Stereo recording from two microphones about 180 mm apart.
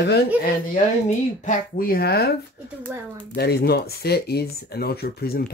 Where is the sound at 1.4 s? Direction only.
50° left (ahead or behind).